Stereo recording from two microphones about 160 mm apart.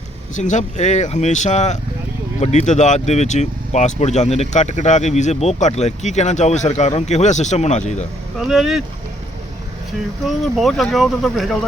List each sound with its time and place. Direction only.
0.3 s speech: 50° left (ahead or behind)
8.4 s speech: centre (ahead or behind)
10.2 s speech: centre (ahead or behind)